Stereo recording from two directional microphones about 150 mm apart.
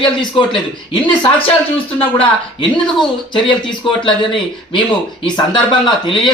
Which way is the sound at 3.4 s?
35° left (ahead or behind).